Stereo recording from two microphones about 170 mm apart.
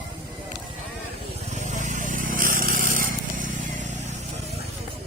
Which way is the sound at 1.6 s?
45° right (ahead or behind).